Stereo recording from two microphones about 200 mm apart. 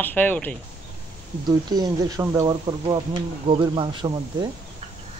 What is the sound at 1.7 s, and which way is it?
Speech, 20° right (ahead or behind).